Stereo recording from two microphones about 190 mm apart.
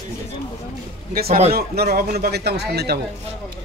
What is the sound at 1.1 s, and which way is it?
A man's voice, 50° right (ahead or behind).